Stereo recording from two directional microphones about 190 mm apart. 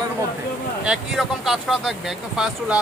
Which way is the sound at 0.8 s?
Centre (ahead or behind).